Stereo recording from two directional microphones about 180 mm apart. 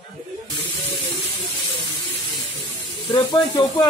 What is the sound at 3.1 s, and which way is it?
Speech, 25° left (ahead or behind).